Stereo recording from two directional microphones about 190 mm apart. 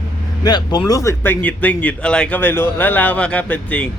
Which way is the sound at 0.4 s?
20° left (ahead or behind).